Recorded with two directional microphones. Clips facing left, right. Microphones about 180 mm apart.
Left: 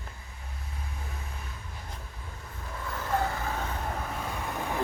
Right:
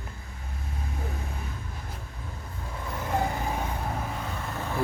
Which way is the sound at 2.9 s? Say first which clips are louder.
Right 1 dB; 15° right (ahead or behind).